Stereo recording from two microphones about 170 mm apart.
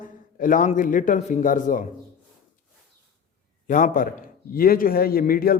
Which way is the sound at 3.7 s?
50° left (ahead or behind).